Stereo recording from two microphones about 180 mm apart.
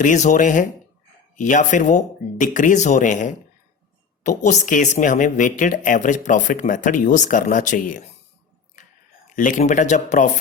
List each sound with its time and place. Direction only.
0.0 s speech: 45° left (ahead or behind)
9.3 s speech: 45° left (ahead or behind)